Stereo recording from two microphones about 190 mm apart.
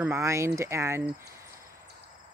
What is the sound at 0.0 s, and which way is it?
Speech, 15° right (ahead or behind).